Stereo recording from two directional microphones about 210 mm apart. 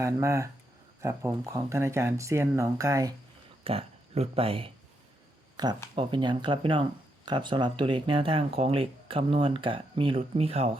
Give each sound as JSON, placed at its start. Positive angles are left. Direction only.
{"t": 0.0, "sound": "speech", "side_deg": -15}
{"t": 3.6, "sound": "speech", "side_deg": -25}